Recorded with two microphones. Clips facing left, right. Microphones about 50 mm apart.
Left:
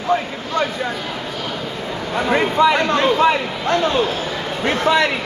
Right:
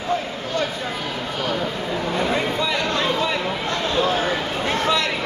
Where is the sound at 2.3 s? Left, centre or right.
Left.